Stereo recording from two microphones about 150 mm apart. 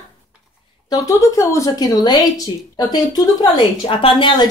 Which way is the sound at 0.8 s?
25° left (ahead or behind).